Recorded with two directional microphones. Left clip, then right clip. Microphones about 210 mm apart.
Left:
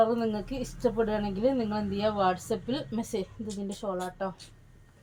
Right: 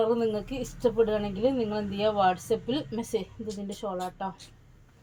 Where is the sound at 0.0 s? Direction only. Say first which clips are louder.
Even; 15° right (ahead or behind).